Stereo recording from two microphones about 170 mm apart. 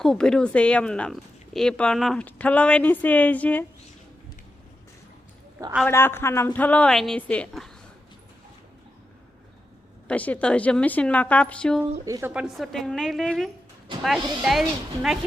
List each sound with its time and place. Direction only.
0.0 s speech: 5° left (ahead or behind)
5.9 s speech: 15° left (ahead or behind)
10.1 s speech: 10° left (ahead or behind)
12.0 s a woman's voice: 20° right (ahead or behind)
12.3 s a woman's voice: 5° right (ahead or behind)